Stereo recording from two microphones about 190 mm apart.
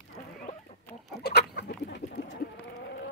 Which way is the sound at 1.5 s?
60° left (ahead or behind).